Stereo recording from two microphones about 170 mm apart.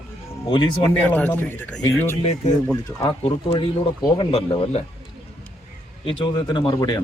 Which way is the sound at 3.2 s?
30° left (ahead or behind).